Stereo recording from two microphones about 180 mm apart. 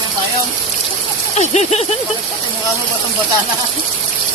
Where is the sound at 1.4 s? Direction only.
40° left (ahead or behind).